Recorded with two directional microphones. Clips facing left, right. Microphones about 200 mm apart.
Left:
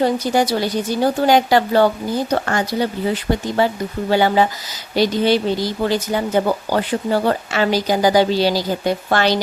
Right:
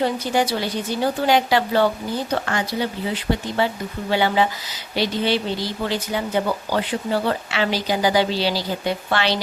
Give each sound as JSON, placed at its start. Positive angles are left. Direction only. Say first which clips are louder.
{"t": 0.0, "sound": "speech", "louder": "left 4 dB", "side_deg": 40}